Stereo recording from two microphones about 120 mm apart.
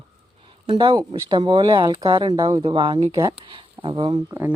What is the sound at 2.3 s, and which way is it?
Speech, 35° right (ahead or behind).